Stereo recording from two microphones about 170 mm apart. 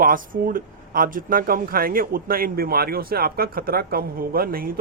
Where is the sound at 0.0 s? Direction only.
55° right (ahead or behind).